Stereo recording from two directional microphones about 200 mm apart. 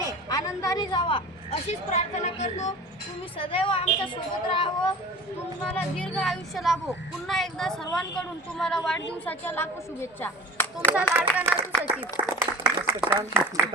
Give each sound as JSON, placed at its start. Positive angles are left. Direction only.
{"t": 0.0, "sound": "a woman's voice", "side_deg": 20}
{"t": 5.6, "sound": "speech", "side_deg": 5}
{"t": 11.1, "sound": "speech", "side_deg": -10}
{"t": 11.9, "sound": "a sound", "side_deg": -10}